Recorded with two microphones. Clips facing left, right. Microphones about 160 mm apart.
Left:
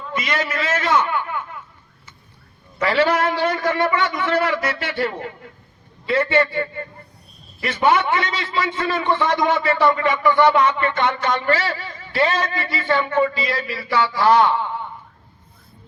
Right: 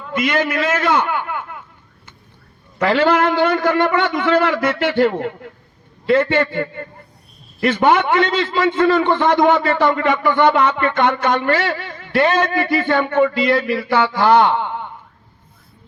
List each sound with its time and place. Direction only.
0.1 s a man's voice: 55° right (ahead or behind)
2.7 s a man's voice: 55° right (ahead or behind)